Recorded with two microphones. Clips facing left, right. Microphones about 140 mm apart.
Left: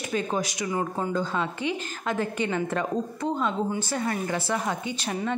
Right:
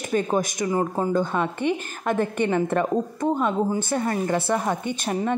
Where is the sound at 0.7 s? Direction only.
35° right (ahead or behind).